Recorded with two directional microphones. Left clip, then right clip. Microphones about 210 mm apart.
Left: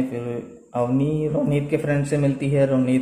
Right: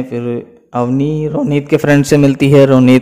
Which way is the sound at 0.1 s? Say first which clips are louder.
Right 9 dB; 45° right (ahead or behind).